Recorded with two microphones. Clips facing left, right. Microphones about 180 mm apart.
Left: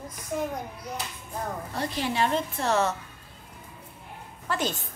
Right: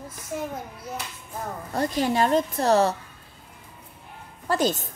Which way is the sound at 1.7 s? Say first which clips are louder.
Right 7 dB; 45° right (ahead or behind).